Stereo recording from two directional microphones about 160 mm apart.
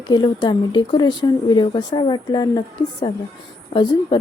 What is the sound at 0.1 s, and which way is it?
Speech, 25° left (ahead or behind).